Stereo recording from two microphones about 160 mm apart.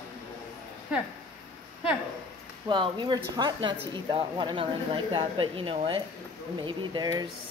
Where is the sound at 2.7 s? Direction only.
30° right (ahead or behind).